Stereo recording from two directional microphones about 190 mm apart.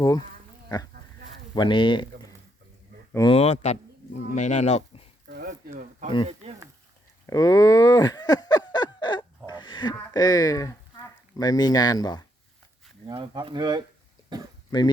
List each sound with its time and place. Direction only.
0.0 s speech: 20° left (ahead or behind)
1.5 s speech: 25° left (ahead or behind)
3.3 s speech: 35° left (ahead or behind)
5.3 s a sound: 55° right (ahead or behind)
7.3 s speech: 20° left (ahead or behind)
9.5 s a sound: 25° left (ahead or behind)
10.1 s speech: 20° left (ahead or behind)
13.1 s speech: 25° right (ahead or behind)